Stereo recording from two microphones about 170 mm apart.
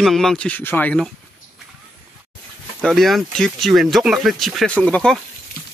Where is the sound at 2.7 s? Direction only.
Centre (ahead or behind).